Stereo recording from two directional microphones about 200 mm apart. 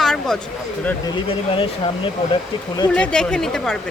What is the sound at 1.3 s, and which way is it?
Speech, 25° left (ahead or behind).